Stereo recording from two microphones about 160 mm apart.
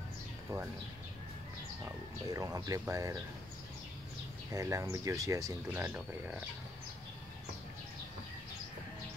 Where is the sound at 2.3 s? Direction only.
20° right (ahead or behind).